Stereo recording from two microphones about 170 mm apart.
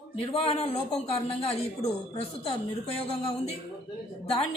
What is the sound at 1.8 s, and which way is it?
Speech, 25° left (ahead or behind).